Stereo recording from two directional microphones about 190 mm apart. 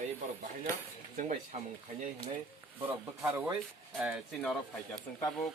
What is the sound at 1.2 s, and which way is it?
Speech, 40° right (ahead or behind).